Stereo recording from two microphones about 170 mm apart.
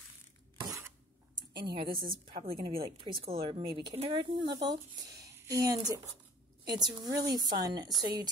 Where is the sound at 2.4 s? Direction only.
60° right (ahead or behind).